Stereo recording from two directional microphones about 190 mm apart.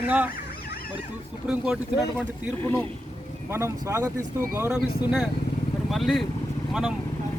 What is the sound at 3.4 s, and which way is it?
Speech, 15° right (ahead or behind).